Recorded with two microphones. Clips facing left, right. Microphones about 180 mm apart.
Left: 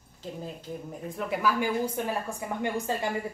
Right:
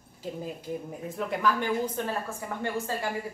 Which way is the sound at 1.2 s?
5° left (ahead or behind).